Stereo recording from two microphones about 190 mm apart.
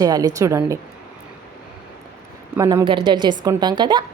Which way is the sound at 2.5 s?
15° right (ahead or behind).